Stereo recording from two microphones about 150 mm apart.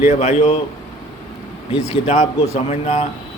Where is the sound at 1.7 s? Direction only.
45° left (ahead or behind).